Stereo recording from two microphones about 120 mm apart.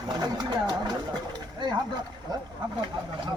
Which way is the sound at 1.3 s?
35° right (ahead or behind).